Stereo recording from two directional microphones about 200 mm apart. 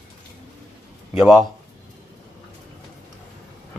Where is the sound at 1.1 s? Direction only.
Centre (ahead or behind).